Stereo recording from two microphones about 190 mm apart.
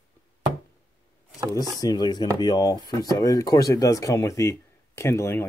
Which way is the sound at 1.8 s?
20° left (ahead or behind).